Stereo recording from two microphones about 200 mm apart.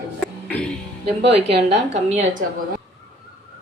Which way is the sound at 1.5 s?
60° right (ahead or behind).